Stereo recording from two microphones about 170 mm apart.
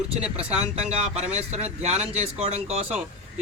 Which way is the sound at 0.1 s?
40° right (ahead or behind).